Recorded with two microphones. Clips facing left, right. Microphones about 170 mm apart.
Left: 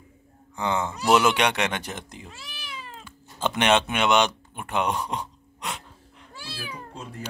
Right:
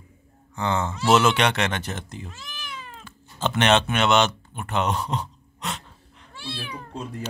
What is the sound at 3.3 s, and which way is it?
Speech, 10° left (ahead or behind).